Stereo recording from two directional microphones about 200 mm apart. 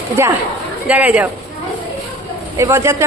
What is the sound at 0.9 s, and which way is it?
Speech, 10° right (ahead or behind).